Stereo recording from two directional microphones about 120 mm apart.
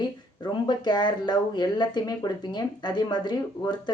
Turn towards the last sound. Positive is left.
turn(degrees=35)  # may be behind; listen again after turning